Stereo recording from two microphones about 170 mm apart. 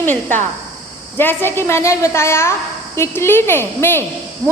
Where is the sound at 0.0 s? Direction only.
10° left (ahead or behind).